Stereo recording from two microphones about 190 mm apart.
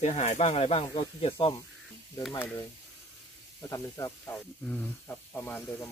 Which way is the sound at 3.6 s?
15° left (ahead or behind).